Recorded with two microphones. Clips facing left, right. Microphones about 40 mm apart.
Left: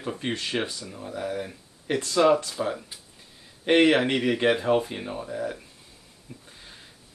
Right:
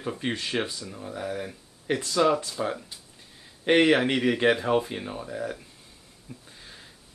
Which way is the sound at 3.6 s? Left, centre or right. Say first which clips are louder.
Left 1 dB; centre.